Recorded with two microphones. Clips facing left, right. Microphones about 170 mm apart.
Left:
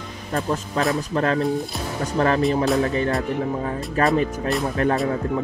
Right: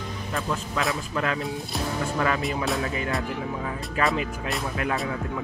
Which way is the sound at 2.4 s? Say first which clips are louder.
Left 8 dB; centre (ahead or behind).